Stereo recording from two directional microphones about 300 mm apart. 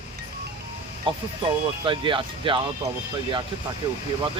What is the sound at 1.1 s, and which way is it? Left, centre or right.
Speech, centre.